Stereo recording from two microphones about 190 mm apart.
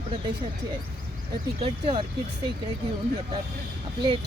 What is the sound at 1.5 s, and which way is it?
Speech, 30° right (ahead or behind).